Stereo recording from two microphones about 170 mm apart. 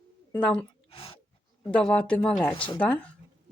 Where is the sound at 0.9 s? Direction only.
35° left (ahead or behind).